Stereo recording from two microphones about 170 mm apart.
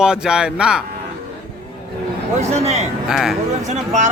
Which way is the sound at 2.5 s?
40° right (ahead or behind).